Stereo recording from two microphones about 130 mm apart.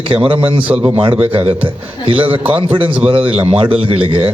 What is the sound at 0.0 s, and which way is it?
Speech, 45° right (ahead or behind).